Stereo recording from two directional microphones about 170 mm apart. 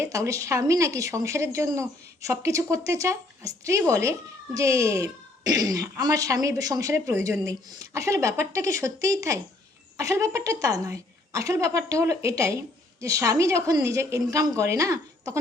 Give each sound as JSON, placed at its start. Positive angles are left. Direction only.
{"t": 0.0, "sound": "a child's voice", "side_deg": -20}